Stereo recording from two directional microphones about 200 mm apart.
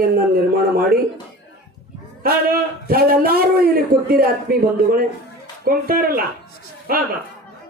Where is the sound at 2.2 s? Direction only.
50° right (ahead or behind).